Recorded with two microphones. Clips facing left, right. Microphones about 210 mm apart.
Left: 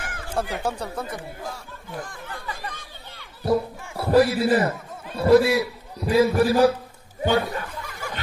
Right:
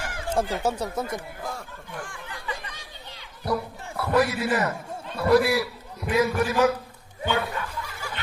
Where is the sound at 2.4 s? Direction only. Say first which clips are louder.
Right 2 dB; 45° left (ahead or behind).